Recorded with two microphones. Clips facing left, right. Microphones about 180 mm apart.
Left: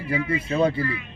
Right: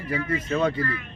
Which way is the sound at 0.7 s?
10° left (ahead or behind).